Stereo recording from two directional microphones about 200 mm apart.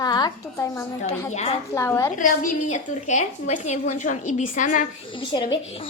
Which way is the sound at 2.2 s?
40° left (ahead or behind).